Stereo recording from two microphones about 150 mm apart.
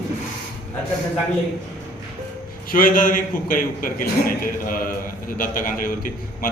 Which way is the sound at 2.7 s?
65° left (ahead or behind).